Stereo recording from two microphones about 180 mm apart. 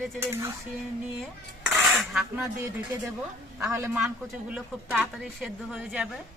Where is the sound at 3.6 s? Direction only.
15° right (ahead or behind).